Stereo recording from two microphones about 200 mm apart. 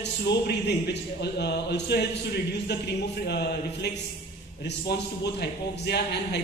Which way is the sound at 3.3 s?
55° left (ahead or behind).